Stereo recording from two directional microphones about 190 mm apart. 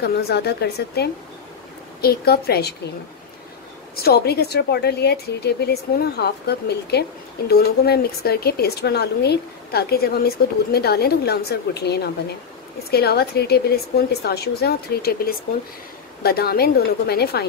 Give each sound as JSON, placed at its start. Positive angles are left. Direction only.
{"t": 0.0, "sound": "a woman's voice", "side_deg": 55}
{"t": 3.9, "sound": "a woman's voice", "side_deg": 55}